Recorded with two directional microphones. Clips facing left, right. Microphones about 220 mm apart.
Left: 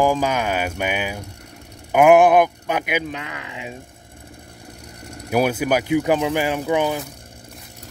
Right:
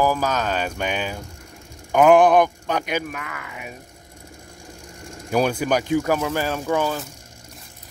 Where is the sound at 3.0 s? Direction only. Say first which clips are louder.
Left 2 dB; 25° left (ahead or behind).